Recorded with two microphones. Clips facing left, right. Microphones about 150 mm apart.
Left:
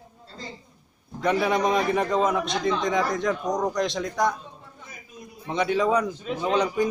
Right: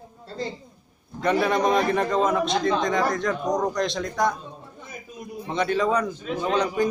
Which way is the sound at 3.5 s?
Centre (ahead or behind).